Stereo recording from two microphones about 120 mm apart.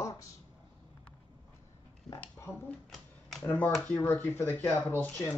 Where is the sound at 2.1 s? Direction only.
15° left (ahead or behind).